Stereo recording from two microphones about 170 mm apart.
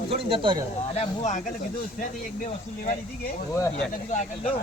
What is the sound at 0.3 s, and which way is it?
Speech, 30° right (ahead or behind).